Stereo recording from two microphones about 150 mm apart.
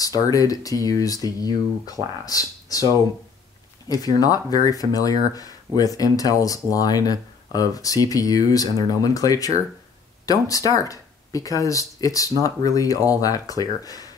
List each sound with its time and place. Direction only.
0.0 s speech: 25° left (ahead or behind)
3.9 s speech: 25° left (ahead or behind)